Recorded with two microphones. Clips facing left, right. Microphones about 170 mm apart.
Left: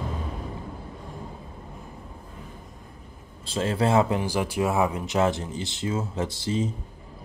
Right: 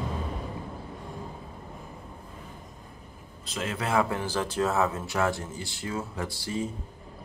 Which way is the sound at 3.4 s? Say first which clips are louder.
Left 8 dB; 30° left (ahead or behind).